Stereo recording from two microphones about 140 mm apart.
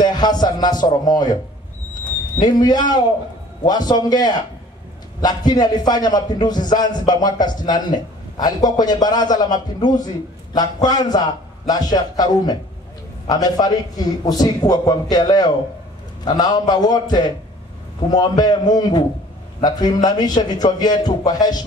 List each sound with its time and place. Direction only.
0.0 s a man's voice: 30° left (ahead or behind)
2.4 s a man's voice: 30° left (ahead or behind)